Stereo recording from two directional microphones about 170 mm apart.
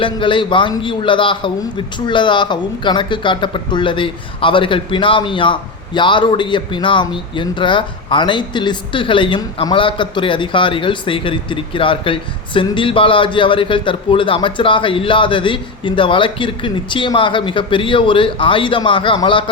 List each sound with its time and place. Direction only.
0.0 s a man's voice: 30° left (ahead or behind)